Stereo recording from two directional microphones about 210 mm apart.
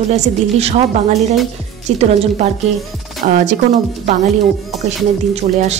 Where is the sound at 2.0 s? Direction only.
35° right (ahead or behind).